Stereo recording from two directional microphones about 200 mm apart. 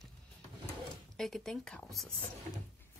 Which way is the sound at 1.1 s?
Centre (ahead or behind).